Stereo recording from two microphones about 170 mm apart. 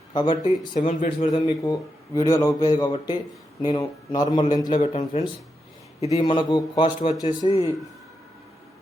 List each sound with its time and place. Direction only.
0.1 s speech: 25° left (ahead or behind)
0.7 s speech: 50° left (ahead or behind)
1.3 s a man's voice: 25° left (ahead or behind)
4.8 s speech: 40° left (ahead or behind)
6.1 s a man's voice: 25° left (ahead or behind)